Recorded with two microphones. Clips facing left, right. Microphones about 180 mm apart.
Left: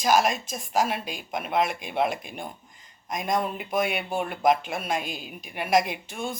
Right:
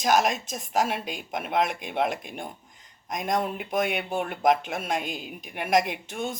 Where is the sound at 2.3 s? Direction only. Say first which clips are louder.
Even; 5° left (ahead or behind).